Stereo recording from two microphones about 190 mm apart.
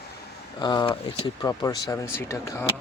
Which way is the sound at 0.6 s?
25° left (ahead or behind).